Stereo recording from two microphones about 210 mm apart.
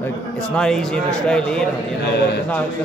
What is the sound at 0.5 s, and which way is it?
Speech, centre (ahead or behind).